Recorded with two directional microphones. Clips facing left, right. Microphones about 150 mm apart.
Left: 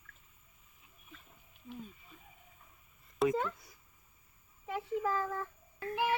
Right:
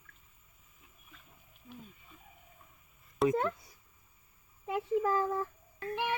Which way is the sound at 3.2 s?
Centre (ahead or behind).